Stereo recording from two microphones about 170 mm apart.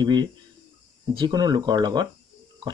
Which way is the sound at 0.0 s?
25° right (ahead or behind).